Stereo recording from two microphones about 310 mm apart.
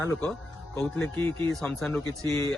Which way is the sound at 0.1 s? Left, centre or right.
Centre.